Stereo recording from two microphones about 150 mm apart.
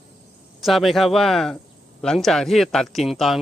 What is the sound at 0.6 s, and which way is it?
Speech, centre (ahead or behind).